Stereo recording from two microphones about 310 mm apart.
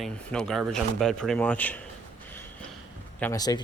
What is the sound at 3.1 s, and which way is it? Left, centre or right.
Speech, centre.